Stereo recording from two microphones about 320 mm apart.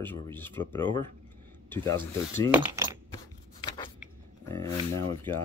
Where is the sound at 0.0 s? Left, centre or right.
Centre.